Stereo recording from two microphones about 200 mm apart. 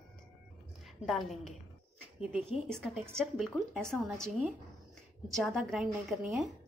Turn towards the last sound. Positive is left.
turn(degrees=-5)  # may be behind; listen again after turning